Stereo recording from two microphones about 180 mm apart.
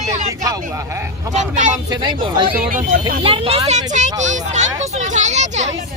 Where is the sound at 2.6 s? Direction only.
50° right (ahead or behind).